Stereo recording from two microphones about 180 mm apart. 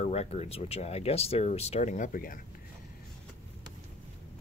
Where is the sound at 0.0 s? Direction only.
35° left (ahead or behind).